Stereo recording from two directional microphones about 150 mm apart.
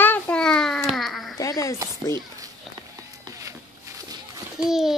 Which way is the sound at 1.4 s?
20° left (ahead or behind).